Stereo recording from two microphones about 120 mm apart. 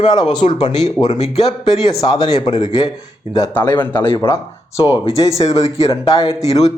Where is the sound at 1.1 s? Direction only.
70° left (ahead or behind).